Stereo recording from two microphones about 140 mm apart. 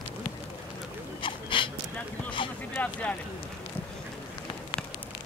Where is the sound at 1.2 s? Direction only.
35° left (ahead or behind).